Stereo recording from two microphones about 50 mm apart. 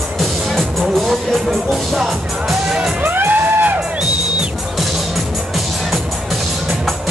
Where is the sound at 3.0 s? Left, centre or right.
Right.